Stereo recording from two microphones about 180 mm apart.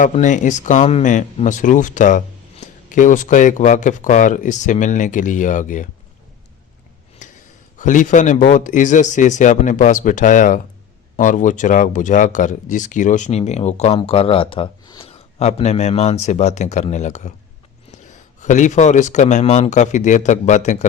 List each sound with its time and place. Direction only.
0.0 s speech: 45° left (ahead or behind)
7.2 s a sound: 45° left (ahead or behind)
7.8 s a man's voice: 45° left (ahead or behind)